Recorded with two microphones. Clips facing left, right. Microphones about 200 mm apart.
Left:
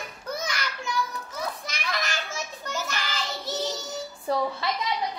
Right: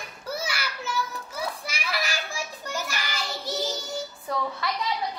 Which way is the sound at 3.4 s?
Centre (ahead or behind).